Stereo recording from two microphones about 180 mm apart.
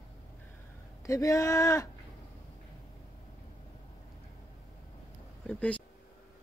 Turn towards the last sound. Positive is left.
turn(degrees=10)  # may be behind; listen again after turning